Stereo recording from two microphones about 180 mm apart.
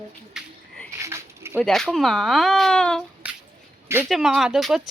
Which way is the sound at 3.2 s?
10° right (ahead or behind).